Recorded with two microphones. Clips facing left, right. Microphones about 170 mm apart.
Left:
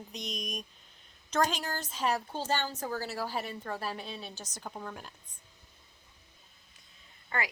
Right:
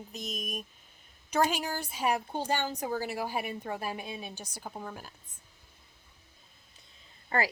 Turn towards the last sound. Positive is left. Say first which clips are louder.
# right 5 dB
turn(degrees=-35)  # may be behind; listen again after turning